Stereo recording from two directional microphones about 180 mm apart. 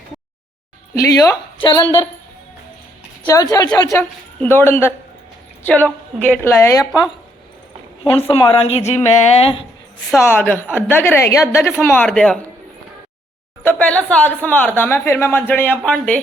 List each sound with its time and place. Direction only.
0.9 s a woman's voice: 20° left (ahead or behind)
3.3 s a woman's voice: 20° left (ahead or behind)
8.0 s a woman's voice: 30° left (ahead or behind)
10.2 s speech: 10° left (ahead or behind)
13.6 s speech: 10° left (ahead or behind)